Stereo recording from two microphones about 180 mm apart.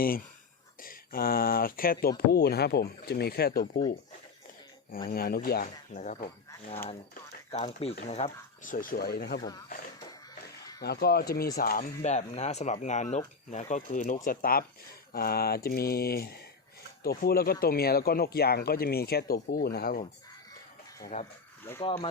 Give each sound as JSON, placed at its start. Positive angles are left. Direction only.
{"t": 0.0, "sound": "speech", "side_deg": 55}
{"t": 4.9, "sound": "speech", "side_deg": 55}
{"t": 7.5, "sound": "speech", "side_deg": 35}
{"t": 10.8, "sound": "speech", "side_deg": 60}
{"t": 12.0, "sound": "speech", "side_deg": 40}
{"t": 21.1, "sound": "speech", "side_deg": 45}
{"t": 21.8, "sound": "speech", "side_deg": 30}